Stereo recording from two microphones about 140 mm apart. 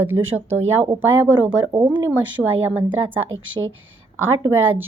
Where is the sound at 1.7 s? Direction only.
30° right (ahead or behind).